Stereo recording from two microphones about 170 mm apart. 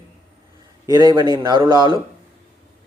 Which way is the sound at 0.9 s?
25° right (ahead or behind).